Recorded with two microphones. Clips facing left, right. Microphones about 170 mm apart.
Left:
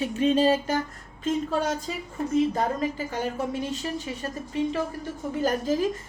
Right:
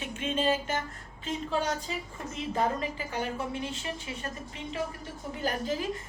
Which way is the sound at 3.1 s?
40° left (ahead or behind).